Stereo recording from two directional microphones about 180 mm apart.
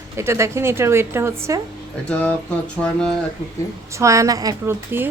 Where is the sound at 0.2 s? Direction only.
15° right (ahead or behind).